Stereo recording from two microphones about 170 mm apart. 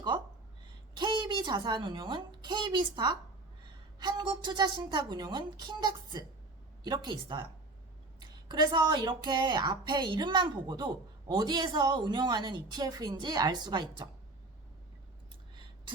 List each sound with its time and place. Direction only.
0.9 s a woman's voice: 25° right (ahead or behind)